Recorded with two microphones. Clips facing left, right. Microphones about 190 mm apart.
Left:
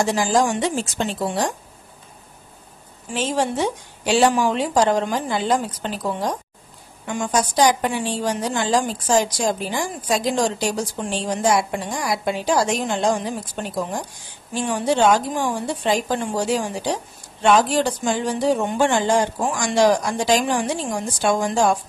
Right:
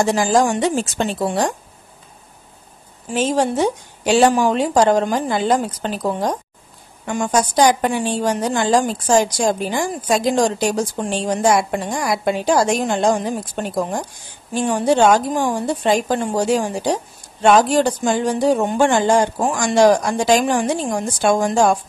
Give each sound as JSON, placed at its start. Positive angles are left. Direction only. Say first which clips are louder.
{"t": 0.0, "sound": "a woman's voice", "louder": "right 3 dB", "side_deg": -50}
{"t": 3.1, "sound": "a woman's voice", "louder": "right 4 dB", "side_deg": -45}